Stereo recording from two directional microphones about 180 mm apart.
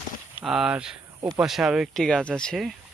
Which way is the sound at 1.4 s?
Centre (ahead or behind).